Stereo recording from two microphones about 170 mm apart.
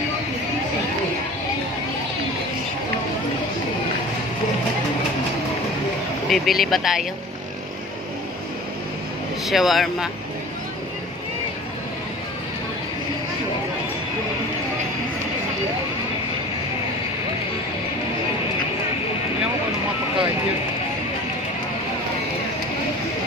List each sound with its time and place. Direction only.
6.2 s speech: centre (ahead or behind)
9.5 s speech: centre (ahead or behind)